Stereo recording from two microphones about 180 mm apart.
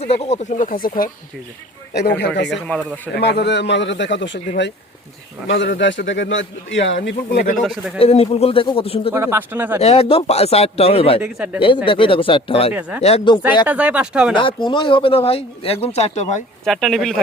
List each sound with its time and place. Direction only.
0.0 s speech: 35° left (ahead or behind); by 1.1 s 50° left (ahead or behind)
1.9 s a man's voice: 65° left (ahead or behind)
2.5 s speech: 5° left (ahead or behind)
3.2 s a man's voice: 65° left (ahead or behind)
7.6 s speech: centre (ahead or behind)
7.9 s speech: 35° left (ahead or behind)
9.1 s speech: 15° right (ahead or behind)
9.8 s speech: 35° left (ahead or behind)
11.2 s speech: 5° right (ahead or behind)
11.9 s speech: 30° left (ahead or behind)
13.7 s speech: 5° right (ahead or behind)
14.3 s speech: 25° left (ahead or behind)
16.6 s speech: centre (ahead or behind)